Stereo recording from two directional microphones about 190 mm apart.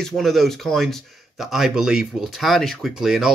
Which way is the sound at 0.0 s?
Centre (ahead or behind).